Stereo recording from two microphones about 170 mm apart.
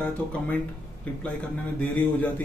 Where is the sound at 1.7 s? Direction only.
10° left (ahead or behind).